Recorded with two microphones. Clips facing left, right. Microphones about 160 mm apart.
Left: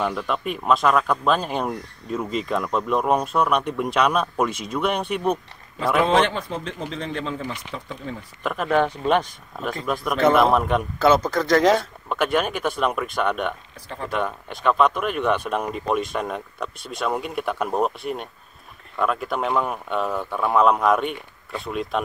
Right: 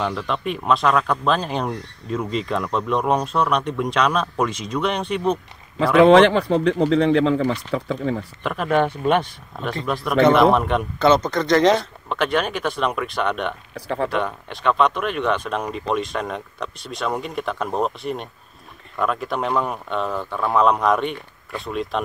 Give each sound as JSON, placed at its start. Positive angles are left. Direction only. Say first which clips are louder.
{"t": 0.0, "sound": "speech", "louder": "right 1 dB", "side_deg": 5}
{"t": 5.9, "sound": "speech", "louder": "right 8 dB", "side_deg": -80}
{"t": 8.4, "sound": "speech", "louder": "even", "side_deg": 0}
{"t": 13.7, "sound": "speech", "louder": "right 9 dB", "side_deg": -75}
{"t": 14.1, "sound": "speech", "louder": "right 2 dB", "side_deg": 0}